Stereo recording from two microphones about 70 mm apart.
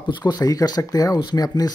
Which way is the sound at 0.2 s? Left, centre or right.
Left.